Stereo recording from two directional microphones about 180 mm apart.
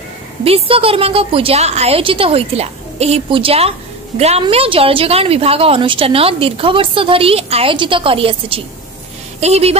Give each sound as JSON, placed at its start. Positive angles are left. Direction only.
{"t": 0.4, "sound": "a woman's voice", "side_deg": -30}